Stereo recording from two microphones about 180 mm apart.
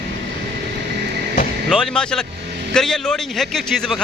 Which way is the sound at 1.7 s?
5° left (ahead or behind).